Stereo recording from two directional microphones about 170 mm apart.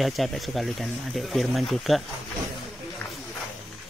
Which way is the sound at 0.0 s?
Centre (ahead or behind).